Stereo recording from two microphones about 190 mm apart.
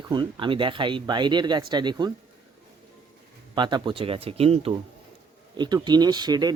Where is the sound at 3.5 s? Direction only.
25° right (ahead or behind).